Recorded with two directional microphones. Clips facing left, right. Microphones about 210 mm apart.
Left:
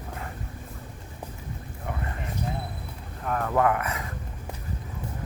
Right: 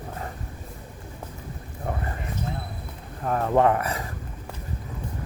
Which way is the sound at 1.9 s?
35° right (ahead or behind).